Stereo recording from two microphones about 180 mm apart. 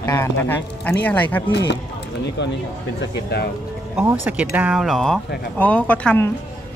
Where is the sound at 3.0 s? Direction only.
65° left (ahead or behind).